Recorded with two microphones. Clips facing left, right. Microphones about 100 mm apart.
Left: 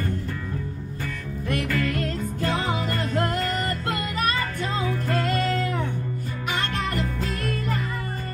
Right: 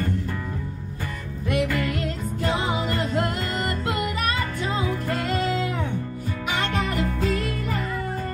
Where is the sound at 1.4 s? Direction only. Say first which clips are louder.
Right 2 dB; 15° right (ahead or behind).